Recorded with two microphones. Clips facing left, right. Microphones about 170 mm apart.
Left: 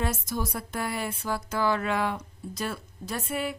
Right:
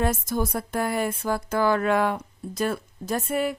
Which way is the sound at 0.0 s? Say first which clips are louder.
Right 5 dB; 50° right (ahead or behind).